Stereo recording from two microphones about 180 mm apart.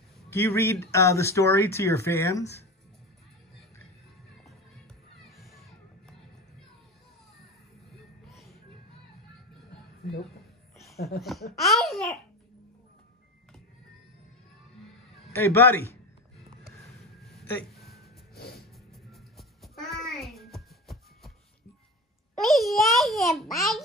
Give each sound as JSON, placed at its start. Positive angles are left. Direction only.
{"t": 0.3, "sound": "speech", "side_deg": 15}
{"t": 5.2, "sound": "children playing", "side_deg": 0}
{"t": 8.3, "sound": "music", "side_deg": 0}
{"t": 11.0, "sound": "speech", "side_deg": 60}
{"t": 11.5, "sound": "a child's voice", "side_deg": 0}
{"t": 15.3, "sound": "speech", "side_deg": 10}
{"t": 17.4, "sound": "a sound", "side_deg": 0}
{"t": 18.3, "sound": "music", "side_deg": 60}
{"t": 18.9, "sound": "music", "side_deg": 0}
{"t": 22.4, "sound": "a child's voice", "side_deg": 0}